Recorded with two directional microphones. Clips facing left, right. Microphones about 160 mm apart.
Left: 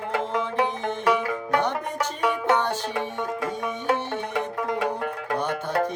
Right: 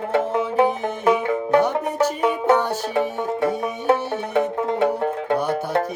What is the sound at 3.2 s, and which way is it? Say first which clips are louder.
Music: right 6 dB; 30° right (ahead or behind).